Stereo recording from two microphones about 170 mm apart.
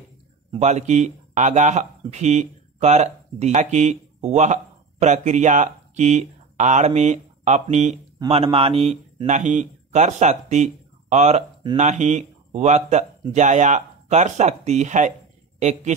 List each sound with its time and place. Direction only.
0.6 s speech: 40° right (ahead or behind)